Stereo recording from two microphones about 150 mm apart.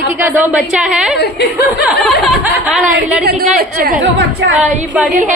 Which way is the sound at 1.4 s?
90° left.